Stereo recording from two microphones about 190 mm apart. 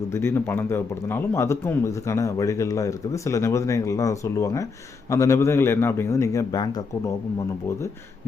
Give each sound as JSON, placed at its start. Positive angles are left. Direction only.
{"t": 0.1, "sound": "a man's voice", "side_deg": 10}